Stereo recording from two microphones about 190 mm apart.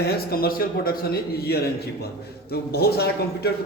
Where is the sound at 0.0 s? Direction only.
55° left (ahead or behind).